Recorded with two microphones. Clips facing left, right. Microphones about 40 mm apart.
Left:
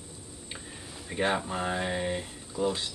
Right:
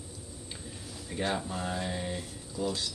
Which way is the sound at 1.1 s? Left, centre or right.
Left.